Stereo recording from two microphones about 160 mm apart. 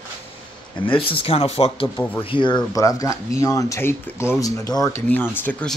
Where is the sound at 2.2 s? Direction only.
30° left (ahead or behind).